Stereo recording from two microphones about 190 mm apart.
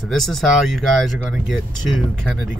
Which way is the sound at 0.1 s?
Centre (ahead or behind).